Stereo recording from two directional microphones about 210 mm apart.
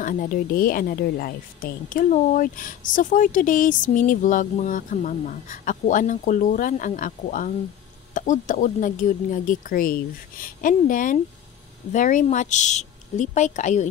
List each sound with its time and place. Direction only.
0.0 s speech: 40° left (ahead or behind)